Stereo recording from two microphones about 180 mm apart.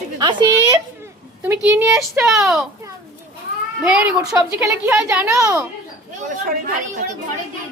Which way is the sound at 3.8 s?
5° right (ahead or behind).